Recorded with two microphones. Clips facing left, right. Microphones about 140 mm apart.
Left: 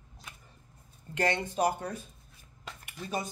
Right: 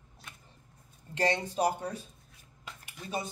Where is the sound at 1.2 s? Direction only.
30° right (ahead or behind).